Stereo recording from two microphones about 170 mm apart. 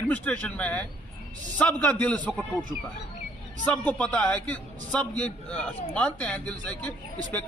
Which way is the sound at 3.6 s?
10° left (ahead or behind).